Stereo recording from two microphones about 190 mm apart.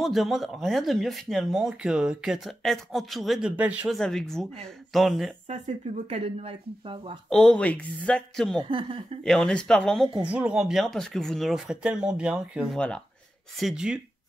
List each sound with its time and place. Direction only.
0.0 s speech: centre (ahead or behind)
4.0 s speech: 5° left (ahead or behind)
5.5 s speech: 35° right (ahead or behind)
7.2 s speech: 5° left (ahead or behind)
8.6 s speech: 25° right (ahead or behind)
9.2 s speech: 5° left (ahead or behind)
10.2 s speech: 5° right (ahead or behind)